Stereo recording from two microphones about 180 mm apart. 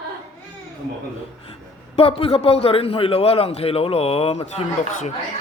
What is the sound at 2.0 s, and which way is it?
A man's voice, 30° left (ahead or behind).